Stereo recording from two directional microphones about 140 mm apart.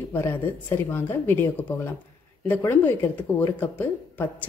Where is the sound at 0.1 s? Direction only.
15° left (ahead or behind).